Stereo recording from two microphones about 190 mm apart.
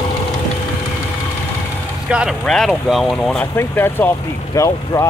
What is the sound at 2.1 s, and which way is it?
Speech, 5° right (ahead or behind).